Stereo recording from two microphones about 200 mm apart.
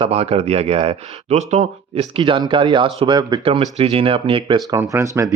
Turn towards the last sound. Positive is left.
turn(degrees=-15)  # may be behind; listen again after turning